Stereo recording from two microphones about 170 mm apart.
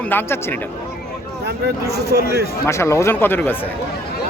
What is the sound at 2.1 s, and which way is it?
Speech, 70° right (ahead or behind).